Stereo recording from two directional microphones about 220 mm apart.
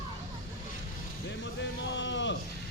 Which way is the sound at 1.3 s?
55° left (ahead or behind).